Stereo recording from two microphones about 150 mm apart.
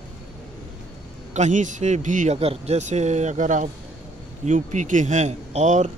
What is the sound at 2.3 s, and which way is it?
Speech, 40° right (ahead or behind).